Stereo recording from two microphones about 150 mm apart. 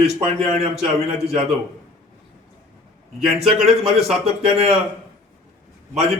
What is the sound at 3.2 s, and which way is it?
Speech, 40° right (ahead or behind).